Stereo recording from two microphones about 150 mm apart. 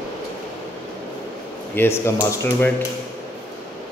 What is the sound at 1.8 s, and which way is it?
Speech, 15° left (ahead or behind).